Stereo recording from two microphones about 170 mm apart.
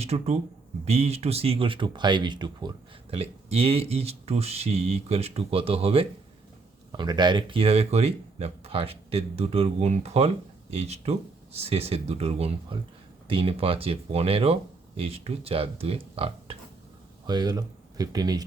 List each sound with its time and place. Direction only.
0.0 s speech: 40° right (ahead or behind); by 18.4 s 20° right (ahead or behind)